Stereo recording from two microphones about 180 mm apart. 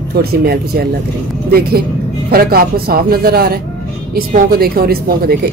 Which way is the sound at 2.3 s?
55° right (ahead or behind).